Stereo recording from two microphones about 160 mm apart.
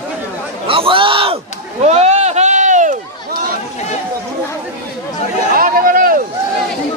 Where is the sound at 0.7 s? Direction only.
35° right (ahead or behind); by 2.9 s 50° right (ahead or behind).